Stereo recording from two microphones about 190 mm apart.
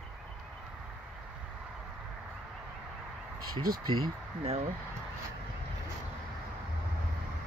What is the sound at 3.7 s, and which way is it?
Speech, 50° right (ahead or behind).